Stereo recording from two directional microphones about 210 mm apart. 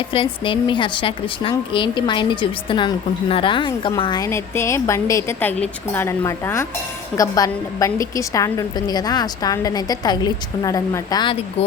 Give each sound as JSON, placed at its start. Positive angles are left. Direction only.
{"t": 0.1, "sound": "a woman's voice", "side_deg": 25}